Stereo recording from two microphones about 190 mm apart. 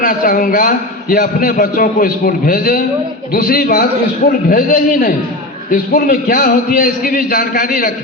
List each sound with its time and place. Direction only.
0.0 s a man's voice: 50° left (ahead or behind)